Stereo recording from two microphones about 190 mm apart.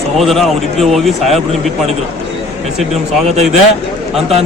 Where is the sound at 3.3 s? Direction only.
35° right (ahead or behind).